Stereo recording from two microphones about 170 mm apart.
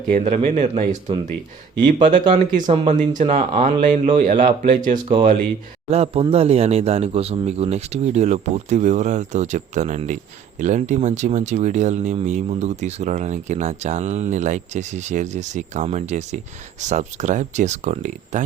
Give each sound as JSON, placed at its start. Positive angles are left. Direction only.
{"t": 0.1, "sound": "speech", "side_deg": -45}
{"t": 5.9, "sound": "speech", "side_deg": -35}